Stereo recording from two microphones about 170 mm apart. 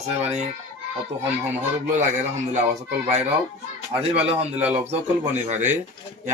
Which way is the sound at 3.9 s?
35° right (ahead or behind).